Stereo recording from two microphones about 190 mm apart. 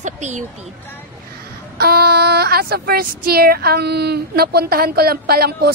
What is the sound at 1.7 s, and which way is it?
Speech, 55° right (ahead or behind).